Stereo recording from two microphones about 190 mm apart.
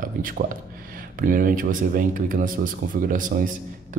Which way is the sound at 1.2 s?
45° right (ahead or behind).